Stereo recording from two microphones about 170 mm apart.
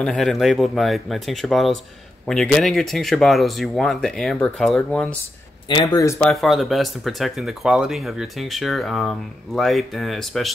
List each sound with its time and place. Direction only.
0.0 s speech: 5° left (ahead or behind)
5.7 s speech: 25° left (ahead or behind)
6.3 s speech: centre (ahead or behind)